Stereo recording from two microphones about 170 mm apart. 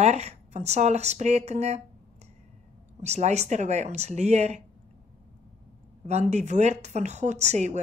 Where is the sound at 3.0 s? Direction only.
40° right (ahead or behind).